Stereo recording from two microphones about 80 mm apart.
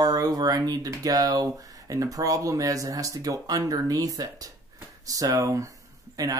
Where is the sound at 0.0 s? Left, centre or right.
Right.